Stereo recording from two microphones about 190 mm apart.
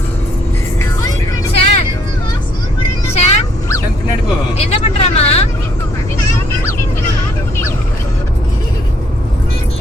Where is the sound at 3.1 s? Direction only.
35° left (ahead or behind).